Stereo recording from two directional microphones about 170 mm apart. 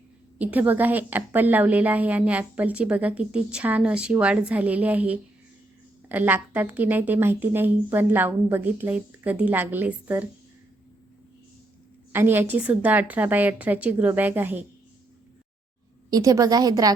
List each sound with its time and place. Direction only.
0.3 s a woman's voice: 10° right (ahead or behind)
12.1 s a woman's voice: 10° right (ahead or behind)
16.0 s a woman's voice: 20° right (ahead or behind)